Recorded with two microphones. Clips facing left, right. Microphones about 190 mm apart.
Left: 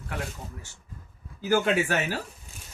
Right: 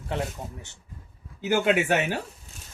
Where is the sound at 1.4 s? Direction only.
20° right (ahead or behind).